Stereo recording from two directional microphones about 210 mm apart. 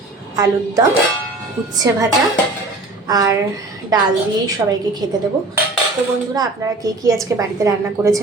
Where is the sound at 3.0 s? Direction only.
20° right (ahead or behind).